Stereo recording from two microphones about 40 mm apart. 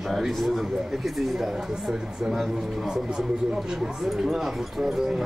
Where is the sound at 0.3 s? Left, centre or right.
Centre.